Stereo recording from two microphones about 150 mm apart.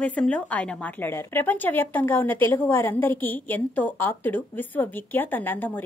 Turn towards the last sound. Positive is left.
turn(degrees=15)  # may be behind; listen again after turning